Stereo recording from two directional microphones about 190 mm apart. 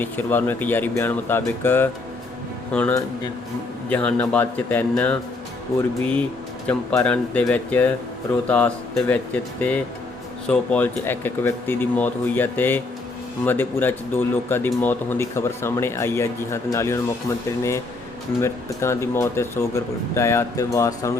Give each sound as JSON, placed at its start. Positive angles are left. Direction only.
{"t": 0.0, "sound": "speech", "side_deg": 10}
{"t": 6.7, "sound": "speech", "side_deg": 5}